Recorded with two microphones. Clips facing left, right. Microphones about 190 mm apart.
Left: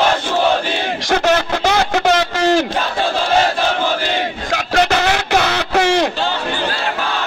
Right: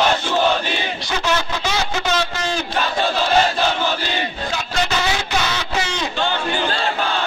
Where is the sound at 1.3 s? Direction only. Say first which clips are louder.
Left 4 dB; 60° left (ahead or behind).